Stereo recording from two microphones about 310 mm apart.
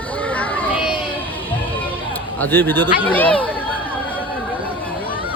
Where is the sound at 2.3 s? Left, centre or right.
Centre.